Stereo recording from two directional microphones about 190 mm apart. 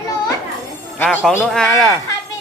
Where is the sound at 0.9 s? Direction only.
10° left (ahead or behind).